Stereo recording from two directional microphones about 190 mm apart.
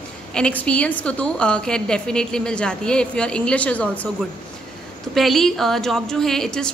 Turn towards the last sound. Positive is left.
turn(degrees=5)  # may be behind; listen again after turning